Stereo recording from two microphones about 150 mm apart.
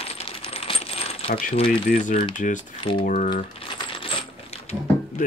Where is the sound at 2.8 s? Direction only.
35° left (ahead or behind).